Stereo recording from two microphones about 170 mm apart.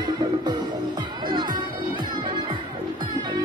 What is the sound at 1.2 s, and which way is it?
Music, 25° right (ahead or behind).